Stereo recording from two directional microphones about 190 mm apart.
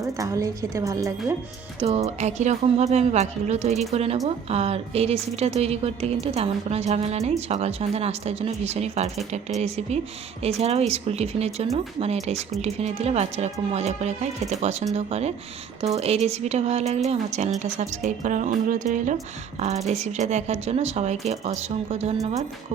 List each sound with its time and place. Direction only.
0.0 s speech: 15° right (ahead or behind)
1.8 s a woman's voice: 30° right (ahead or behind)